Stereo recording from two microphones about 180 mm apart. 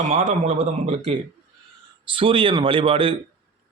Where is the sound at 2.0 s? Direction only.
30° right (ahead or behind).